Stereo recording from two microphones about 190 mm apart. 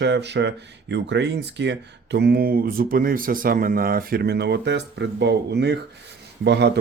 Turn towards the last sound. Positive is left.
turn(degrees=-65)  # may be behind; listen again after turning